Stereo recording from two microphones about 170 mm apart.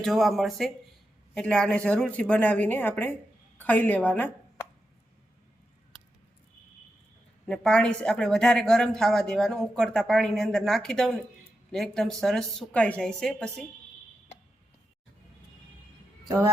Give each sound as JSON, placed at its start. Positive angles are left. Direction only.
{"t": 0.0, "sound": "a woman's voice", "side_deg": 0}
{"t": 7.4, "sound": "speech", "side_deg": 5}
{"t": 16.2, "sound": "speech", "side_deg": -15}